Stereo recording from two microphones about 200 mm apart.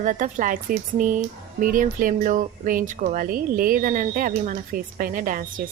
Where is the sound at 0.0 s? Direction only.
40° right (ahead or behind).